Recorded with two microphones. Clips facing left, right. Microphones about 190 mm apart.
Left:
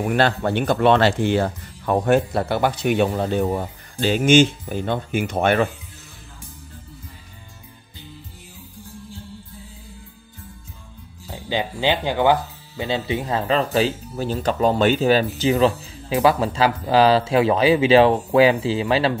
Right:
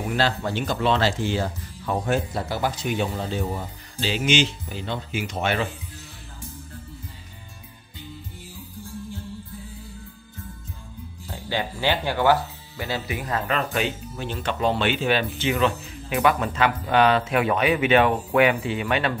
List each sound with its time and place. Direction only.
0.0 s speech: 60° left (ahead or behind)
11.2 s speech: 20° left (ahead or behind)